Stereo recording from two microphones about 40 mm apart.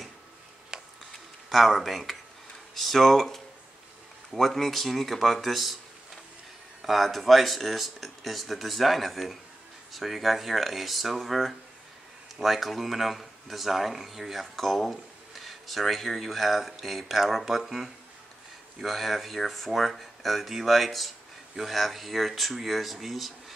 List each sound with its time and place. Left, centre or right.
0.7 s a sound: centre
1.5 s speech: centre
6.8 s speech: centre